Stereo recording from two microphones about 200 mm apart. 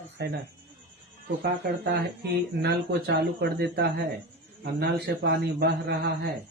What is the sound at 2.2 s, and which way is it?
A man's voice, 55° right (ahead or behind).